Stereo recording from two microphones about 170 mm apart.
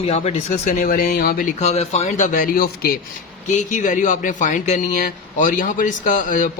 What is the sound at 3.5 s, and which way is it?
Speech, 50° left (ahead or behind).